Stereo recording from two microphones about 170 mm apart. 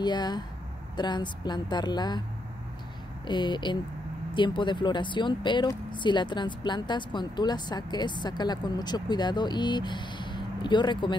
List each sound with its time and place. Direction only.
0.0 s speech: 25° left (ahead or behind)
3.3 s speech: 25° left (ahead or behind)